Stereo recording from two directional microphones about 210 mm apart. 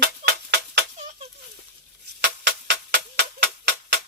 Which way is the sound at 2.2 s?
55° right (ahead or behind).